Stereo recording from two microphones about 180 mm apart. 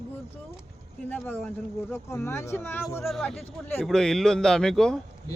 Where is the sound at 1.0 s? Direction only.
10° left (ahead or behind).